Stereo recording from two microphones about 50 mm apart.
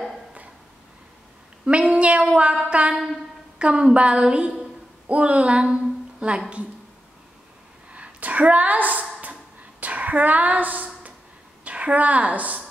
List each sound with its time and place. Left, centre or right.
1.7 s a woman's voice: right
7.9 s a sound: right
11.6 s a woman's voice: right